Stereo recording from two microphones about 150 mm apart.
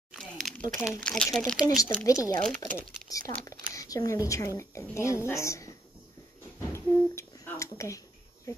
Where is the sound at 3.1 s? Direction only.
20° left (ahead or behind).